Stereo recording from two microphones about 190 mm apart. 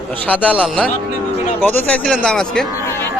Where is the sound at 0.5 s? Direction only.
Centre (ahead or behind).